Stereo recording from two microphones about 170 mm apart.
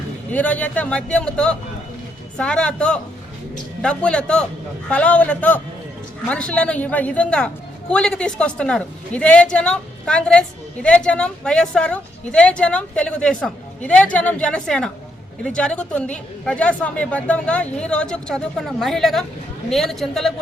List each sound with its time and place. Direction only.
0.3 s a woman's voice: 10° left (ahead or behind)